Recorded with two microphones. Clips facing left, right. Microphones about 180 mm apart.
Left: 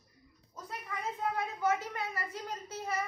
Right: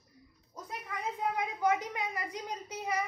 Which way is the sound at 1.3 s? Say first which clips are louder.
Right 2 dB; 15° right (ahead or behind).